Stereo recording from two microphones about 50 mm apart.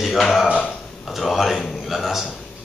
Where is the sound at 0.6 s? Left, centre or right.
Centre.